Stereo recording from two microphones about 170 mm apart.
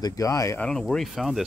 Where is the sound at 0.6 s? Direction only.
5° left (ahead or behind).